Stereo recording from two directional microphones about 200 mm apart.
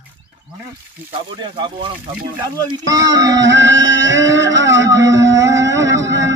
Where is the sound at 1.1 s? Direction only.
25° right (ahead or behind).